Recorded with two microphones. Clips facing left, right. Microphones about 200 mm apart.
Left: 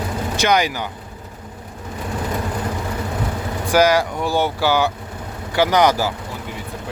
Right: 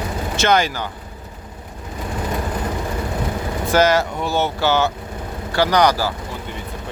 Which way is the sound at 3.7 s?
10° left (ahead or behind).